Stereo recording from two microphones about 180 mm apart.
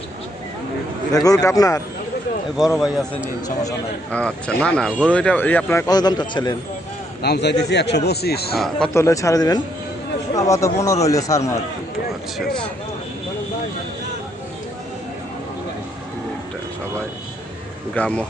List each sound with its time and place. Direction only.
1.1 s speech: 20° left (ahead or behind)
2.6 s speech: centre (ahead or behind)
4.1 s speech: 5° left (ahead or behind); by 6.6 s 25° left (ahead or behind)
7.2 s a man's voice: 65° left (ahead or behind)
8.5 s speech: centre (ahead or behind)
8.9 s speech: 15° left (ahead or behind)
17.9 s speech: 5° left (ahead or behind)